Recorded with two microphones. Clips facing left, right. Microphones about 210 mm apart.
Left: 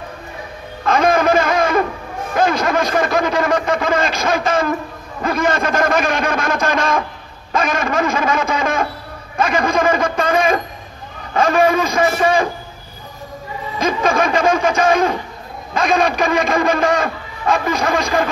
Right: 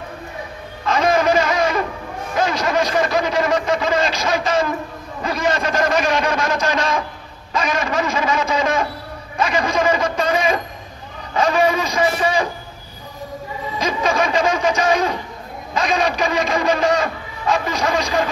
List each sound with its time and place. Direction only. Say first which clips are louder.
0.8 s a sound: left 2 dB; 55° left (ahead or behind)
5.2 s a man's voice: left 3 dB; 55° left (ahead or behind)
13.7 s a man's voice: left 3 dB; 50° left (ahead or behind)